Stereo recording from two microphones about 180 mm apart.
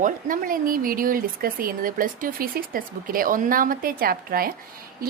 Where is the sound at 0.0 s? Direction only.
50° right (ahead or behind).